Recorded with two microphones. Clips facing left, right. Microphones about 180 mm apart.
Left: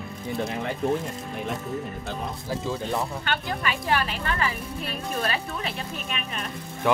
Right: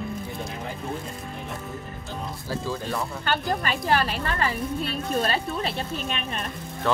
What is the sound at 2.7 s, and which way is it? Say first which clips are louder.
Speech: left 2 dB; 20° left (ahead or behind).